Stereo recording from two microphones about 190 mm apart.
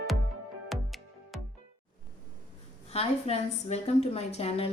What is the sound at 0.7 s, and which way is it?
Music, centre (ahead or behind).